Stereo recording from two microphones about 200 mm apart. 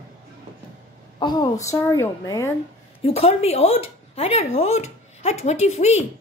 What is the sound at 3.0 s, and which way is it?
A woman's voice, 30° left (ahead or behind).